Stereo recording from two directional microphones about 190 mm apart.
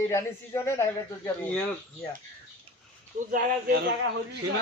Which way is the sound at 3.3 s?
55° right (ahead or behind).